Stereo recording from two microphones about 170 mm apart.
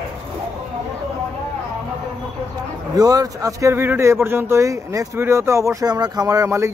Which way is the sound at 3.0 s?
20° right (ahead or behind).